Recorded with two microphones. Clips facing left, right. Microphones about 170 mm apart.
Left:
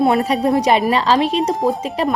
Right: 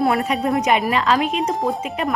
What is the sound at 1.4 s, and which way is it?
Speech, centre (ahead or behind).